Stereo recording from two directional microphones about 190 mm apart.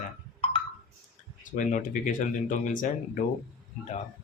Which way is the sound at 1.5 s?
40° left (ahead or behind).